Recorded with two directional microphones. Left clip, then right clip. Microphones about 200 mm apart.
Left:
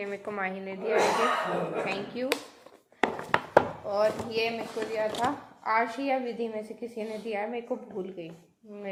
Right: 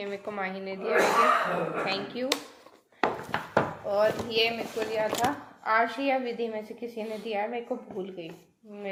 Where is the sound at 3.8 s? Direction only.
Centre (ahead or behind).